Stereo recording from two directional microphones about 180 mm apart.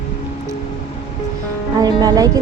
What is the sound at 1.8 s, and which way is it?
Speech, 20° right (ahead or behind).